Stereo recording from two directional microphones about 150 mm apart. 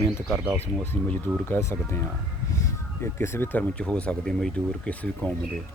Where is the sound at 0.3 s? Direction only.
5° right (ahead or behind).